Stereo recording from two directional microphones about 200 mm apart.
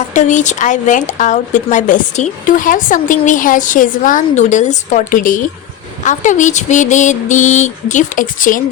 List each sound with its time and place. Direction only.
0.1 s speech: 35° left (ahead or behind)